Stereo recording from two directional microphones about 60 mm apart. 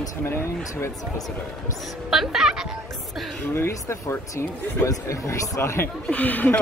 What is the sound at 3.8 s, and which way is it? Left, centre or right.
Speech, left.